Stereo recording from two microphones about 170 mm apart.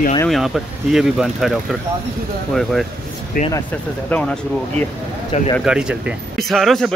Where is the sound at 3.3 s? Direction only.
60° left (ahead or behind).